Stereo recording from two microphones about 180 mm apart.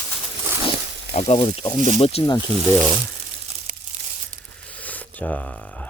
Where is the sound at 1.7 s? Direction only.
45° right (ahead or behind).